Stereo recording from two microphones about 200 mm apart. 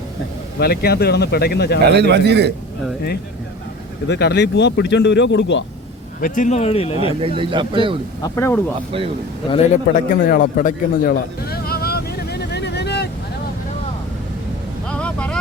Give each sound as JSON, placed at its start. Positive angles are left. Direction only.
{"t": 0.6, "sound": "speech", "side_deg": 50}
{"t": 1.9, "sound": "a man's voice", "side_deg": -55}
{"t": 4.1, "sound": "speech", "side_deg": 60}
{"t": 6.1, "sound": "speech", "side_deg": 45}
{"t": 7.2, "sound": "speech", "side_deg": -25}
{"t": 8.2, "sound": "speech", "side_deg": 15}
{"t": 9.9, "sound": "a sound", "side_deg": 50}
{"t": 14.8, "sound": "vehicle", "side_deg": 5}